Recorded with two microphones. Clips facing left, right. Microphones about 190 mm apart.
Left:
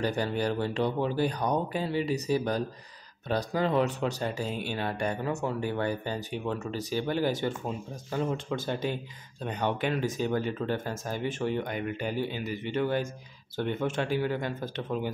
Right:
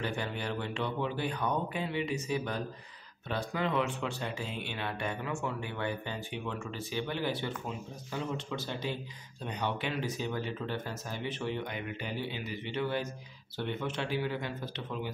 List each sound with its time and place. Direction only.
0.0 s speech: 40° left (ahead or behind)